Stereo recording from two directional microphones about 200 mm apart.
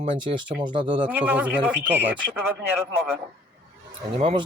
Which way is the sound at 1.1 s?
5° right (ahead or behind).